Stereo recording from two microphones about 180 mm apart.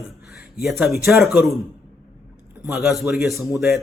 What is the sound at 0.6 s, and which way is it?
Speech, centre (ahead or behind).